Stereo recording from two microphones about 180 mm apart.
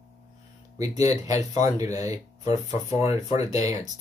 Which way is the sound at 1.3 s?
40° left (ahead or behind).